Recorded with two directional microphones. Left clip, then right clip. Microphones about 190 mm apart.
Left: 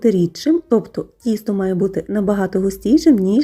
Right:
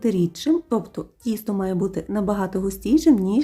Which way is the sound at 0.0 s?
20° left (ahead or behind).